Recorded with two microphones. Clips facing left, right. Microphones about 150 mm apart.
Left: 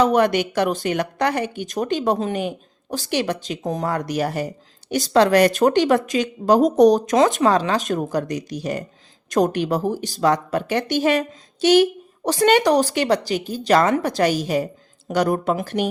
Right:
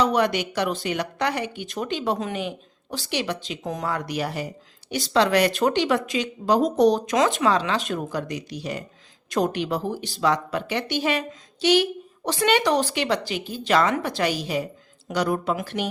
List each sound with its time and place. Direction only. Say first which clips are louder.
0.0 s speech: left 4 dB; 50° left (ahead or behind)